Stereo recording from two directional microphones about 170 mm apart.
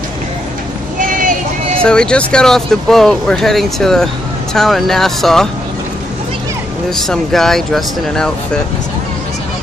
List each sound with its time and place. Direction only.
0.9 s vehicle: 50° right (ahead or behind)
1.8 s speech: 5° left (ahead or behind)
7.0 s speech: centre (ahead or behind)